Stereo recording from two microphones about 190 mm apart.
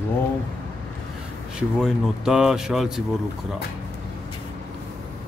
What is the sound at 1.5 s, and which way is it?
Speech, 5° right (ahead or behind).